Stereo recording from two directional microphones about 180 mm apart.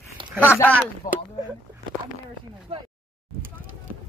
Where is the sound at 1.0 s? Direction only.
50° left (ahead or behind).